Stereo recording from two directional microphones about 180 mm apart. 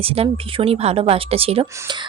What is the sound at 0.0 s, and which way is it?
Speech, 30° right (ahead or behind).